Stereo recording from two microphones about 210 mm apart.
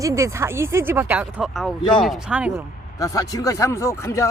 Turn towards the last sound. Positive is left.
turn(degrees=15)  # may be behind; listen again after turning